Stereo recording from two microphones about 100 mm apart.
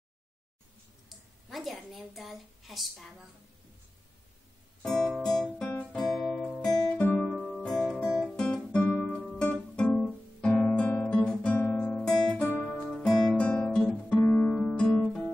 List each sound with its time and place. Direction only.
1.0 s a woman's voice: centre (ahead or behind)
4.8 s guitar: 5° left (ahead or behind)
8.7 s guitar: 15° left (ahead or behind)
9.1 s music: centre (ahead or behind)
9.4 s music: 10° left (ahead or behind)
10.4 s guitar: 10° left (ahead or behind)
12.4 s guitar: 15° left (ahead or behind)